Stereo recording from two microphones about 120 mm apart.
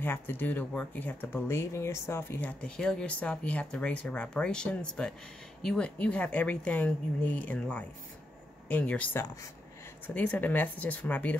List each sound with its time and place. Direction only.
0.0 s speech: 15° left (ahead or behind)
2.6 s speech: 5° left (ahead or behind)
9.2 s speech: 25° left (ahead or behind)
10.0 s speech: 15° left (ahead or behind)